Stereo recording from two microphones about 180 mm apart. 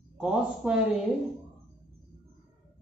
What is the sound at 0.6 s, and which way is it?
Speech, 5° right (ahead or behind).